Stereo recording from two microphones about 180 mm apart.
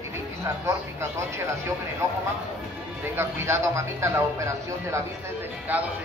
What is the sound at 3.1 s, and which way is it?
Speech, 15° right (ahead or behind).